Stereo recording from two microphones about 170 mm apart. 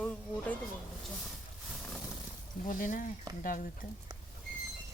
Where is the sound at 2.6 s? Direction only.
50° left (ahead or behind).